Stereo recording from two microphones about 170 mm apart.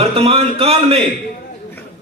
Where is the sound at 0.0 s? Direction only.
35° right (ahead or behind).